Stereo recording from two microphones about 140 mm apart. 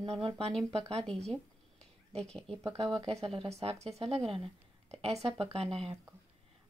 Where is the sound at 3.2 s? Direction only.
45° right (ahead or behind).